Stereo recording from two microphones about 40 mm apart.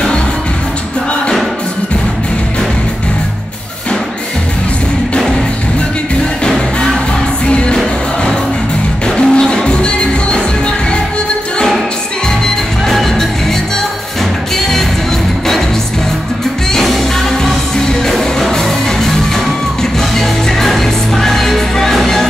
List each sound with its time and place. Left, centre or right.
7.4 s music: left
7.7 s music: centre
16.7 s music: centre
18.0 s music: centre